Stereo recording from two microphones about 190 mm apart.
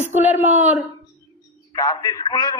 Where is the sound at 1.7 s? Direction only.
20° left (ahead or behind).